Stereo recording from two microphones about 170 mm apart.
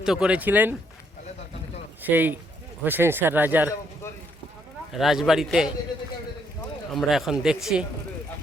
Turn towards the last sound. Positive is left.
turn(degrees=-5)  # may be behind; listen again after turning